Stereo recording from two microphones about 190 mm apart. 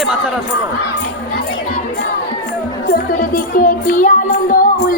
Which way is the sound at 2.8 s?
50° left (ahead or behind).